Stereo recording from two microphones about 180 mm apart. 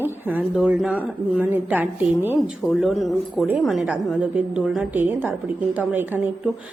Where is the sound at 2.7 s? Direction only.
Centre (ahead or behind).